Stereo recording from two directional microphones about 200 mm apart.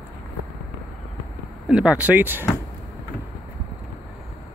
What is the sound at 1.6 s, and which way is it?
Speech, 5° right (ahead or behind).